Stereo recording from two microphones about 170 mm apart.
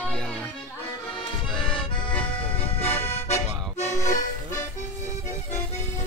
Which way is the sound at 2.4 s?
35° left (ahead or behind).